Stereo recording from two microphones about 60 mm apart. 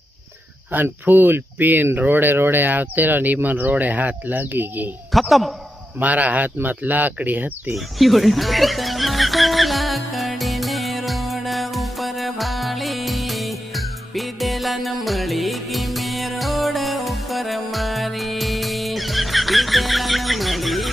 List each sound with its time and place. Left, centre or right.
0.7 s speech: right
5.1 s a man's voice: centre
5.9 s speech: right
7.7 s music: centre